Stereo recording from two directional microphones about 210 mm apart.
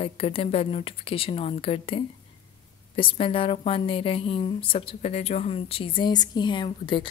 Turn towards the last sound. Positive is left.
turn(degrees=20)  # may be behind; listen again after turning